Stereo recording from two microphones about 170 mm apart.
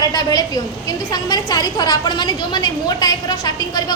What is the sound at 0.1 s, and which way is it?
A woman's voice, 20° left (ahead or behind).